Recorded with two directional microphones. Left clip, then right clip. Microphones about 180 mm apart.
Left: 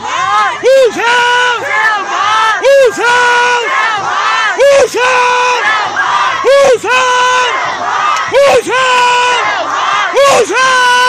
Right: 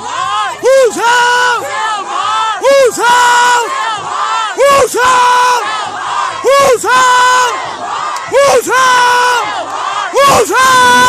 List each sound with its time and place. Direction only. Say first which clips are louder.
0.7 s a sound: right 1 dB; 25° right (ahead or behind)
2.6 s yell: right 2 dB; 20° right (ahead or behind)
4.6 s yell: right 1 dB; 30° right (ahead or behind)
6.4 s crowd: even; 30° right (ahead or behind)
8.4 s yell: right 1 dB; 25° right (ahead or behind)
10.1 s a sound: right 2 dB; 30° right (ahead or behind)